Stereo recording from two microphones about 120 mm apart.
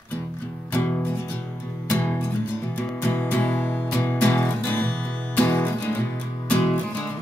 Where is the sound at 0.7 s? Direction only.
15° left (ahead or behind).